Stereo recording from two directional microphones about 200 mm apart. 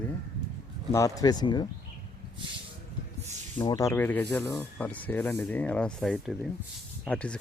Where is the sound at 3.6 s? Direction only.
20° left (ahead or behind).